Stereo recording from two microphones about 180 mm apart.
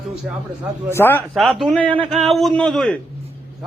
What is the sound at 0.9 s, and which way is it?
Speech, 10° left (ahead or behind).